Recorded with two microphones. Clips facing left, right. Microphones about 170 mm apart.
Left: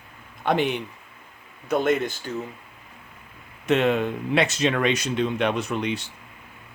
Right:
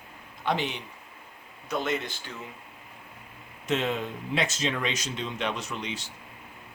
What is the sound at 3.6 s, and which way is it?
Speech, 65° left (ahead or behind).